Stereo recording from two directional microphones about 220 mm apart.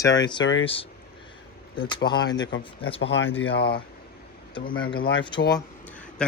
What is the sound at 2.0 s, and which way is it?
Speech, 20° left (ahead or behind).